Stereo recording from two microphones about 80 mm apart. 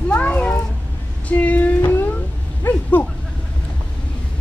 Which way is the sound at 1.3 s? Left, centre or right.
Centre.